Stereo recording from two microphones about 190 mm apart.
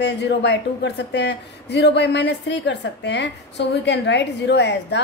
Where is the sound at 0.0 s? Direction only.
65° left (ahead or behind).